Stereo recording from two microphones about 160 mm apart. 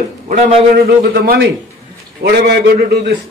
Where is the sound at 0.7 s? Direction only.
75° right (ahead or behind).